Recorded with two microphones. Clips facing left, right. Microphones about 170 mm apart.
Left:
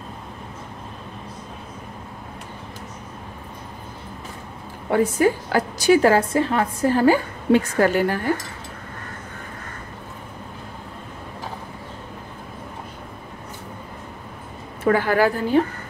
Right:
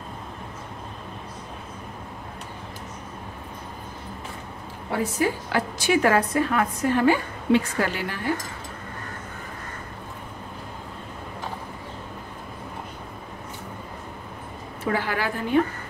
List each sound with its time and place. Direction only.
4.9 s a woman's voice: 45° left (ahead or behind)
14.9 s a woman's voice: 50° left (ahead or behind)